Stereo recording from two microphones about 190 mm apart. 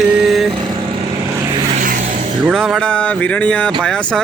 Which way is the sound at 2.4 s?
Centre (ahead or behind).